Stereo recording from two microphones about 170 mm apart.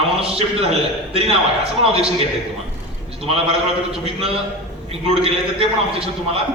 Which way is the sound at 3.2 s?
35° right (ahead or behind).